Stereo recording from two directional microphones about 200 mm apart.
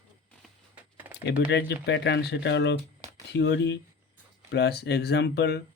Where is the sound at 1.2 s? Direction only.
60° left (ahead or behind).